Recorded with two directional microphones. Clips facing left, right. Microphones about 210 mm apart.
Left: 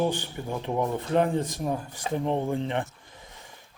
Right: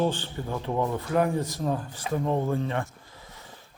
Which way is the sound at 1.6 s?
15° left (ahead or behind).